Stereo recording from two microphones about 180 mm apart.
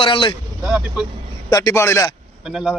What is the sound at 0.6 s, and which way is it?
Speech, 5° right (ahead or behind).